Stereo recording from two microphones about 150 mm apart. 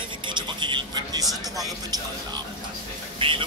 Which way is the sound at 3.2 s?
35° right (ahead or behind).